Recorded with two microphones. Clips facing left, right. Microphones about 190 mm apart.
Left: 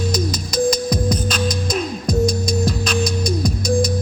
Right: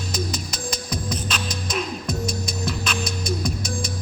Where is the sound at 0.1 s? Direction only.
40° left (ahead or behind).